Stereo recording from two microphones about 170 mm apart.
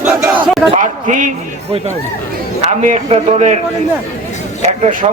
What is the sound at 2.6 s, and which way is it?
Speech, 45° right (ahead or behind).